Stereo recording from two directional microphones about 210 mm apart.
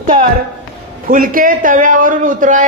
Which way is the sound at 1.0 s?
40° right (ahead or behind).